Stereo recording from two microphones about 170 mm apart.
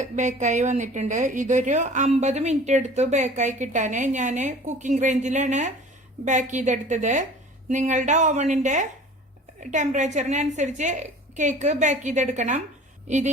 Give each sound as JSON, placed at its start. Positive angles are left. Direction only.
{"t": 0.0, "sound": "speech", "side_deg": -45}